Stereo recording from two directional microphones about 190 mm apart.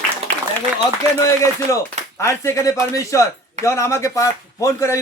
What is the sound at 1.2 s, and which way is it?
Speech, 15° left (ahead or behind).